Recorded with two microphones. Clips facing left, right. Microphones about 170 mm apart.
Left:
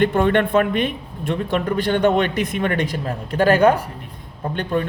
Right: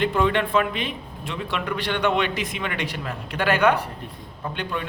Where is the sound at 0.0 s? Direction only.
50° left (ahead or behind).